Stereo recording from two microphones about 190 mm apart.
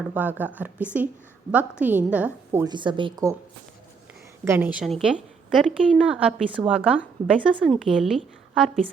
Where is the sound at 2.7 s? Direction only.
25° right (ahead or behind).